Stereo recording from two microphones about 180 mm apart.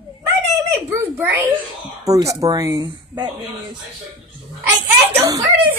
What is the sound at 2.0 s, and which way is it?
Speech, 20° right (ahead or behind).